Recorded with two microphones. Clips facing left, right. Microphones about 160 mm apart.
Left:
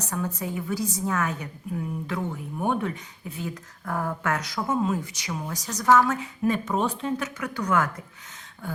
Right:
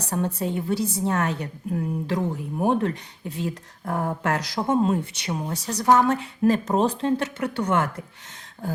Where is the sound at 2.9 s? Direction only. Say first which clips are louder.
Right 4 dB; 80° right.